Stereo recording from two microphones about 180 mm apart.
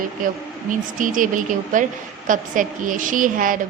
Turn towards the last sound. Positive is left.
turn(degrees=-50)  # may be behind; listen again after turning